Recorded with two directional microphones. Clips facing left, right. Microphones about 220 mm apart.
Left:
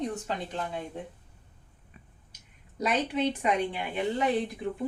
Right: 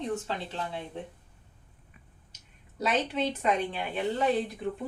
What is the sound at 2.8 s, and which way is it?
A woman's voice, 15° left (ahead or behind).